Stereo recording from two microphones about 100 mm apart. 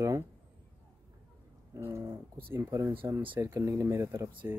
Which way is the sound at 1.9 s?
25° right (ahead or behind).